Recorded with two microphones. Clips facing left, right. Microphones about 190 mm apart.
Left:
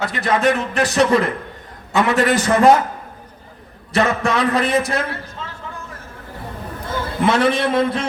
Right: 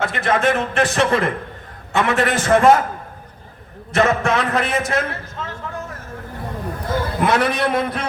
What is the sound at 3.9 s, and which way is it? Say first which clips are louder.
A man's voice: right 1 dB; 35° left (ahead or behind).